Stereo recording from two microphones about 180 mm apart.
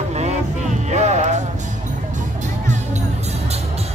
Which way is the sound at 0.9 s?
40° right (ahead or behind).